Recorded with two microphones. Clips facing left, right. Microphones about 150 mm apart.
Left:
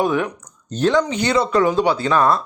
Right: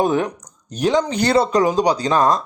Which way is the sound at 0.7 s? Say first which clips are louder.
Left 1 dB; 15° right (ahead or behind).